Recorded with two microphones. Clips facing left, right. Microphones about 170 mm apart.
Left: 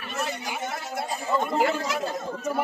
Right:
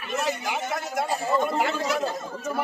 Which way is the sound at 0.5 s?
60° right (ahead or behind).